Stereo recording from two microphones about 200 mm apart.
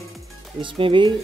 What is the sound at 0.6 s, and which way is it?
Speech, 25° right (ahead or behind).